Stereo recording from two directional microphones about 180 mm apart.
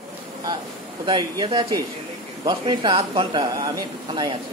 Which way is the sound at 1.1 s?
25° right (ahead or behind).